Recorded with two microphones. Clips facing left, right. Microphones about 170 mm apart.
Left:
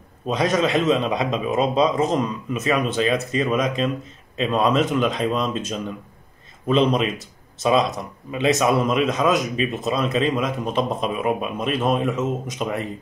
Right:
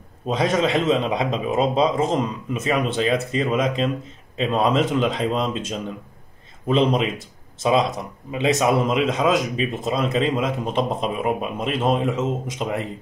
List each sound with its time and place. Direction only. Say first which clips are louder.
0.3 s a man's voice: even; 25° right (ahead or behind)
8.3 s a man's voice: even; 20° right (ahead or behind)